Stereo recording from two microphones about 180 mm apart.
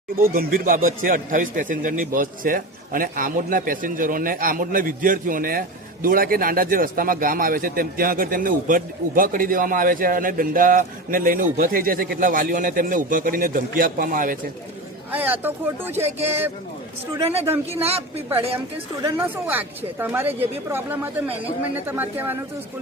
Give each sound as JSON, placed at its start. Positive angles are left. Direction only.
{"t": 0.2, "sound": "a man's voice", "side_deg": -50}
{"t": 15.1, "sound": "speech", "side_deg": -10}
{"t": 17.2, "sound": "a woman's voice", "side_deg": -35}
{"t": 19.0, "sound": "speech", "side_deg": -15}